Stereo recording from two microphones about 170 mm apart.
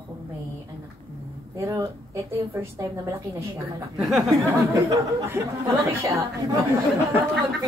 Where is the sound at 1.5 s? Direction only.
20° right (ahead or behind).